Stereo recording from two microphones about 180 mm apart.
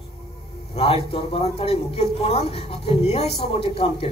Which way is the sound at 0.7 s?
30° left (ahead or behind).